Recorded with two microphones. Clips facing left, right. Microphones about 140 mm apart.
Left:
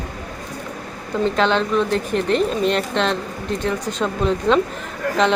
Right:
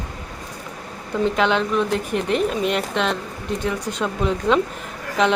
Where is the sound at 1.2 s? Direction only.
10° right (ahead or behind).